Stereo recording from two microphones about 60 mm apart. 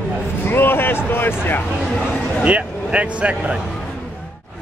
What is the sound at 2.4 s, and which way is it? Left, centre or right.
Speech, right.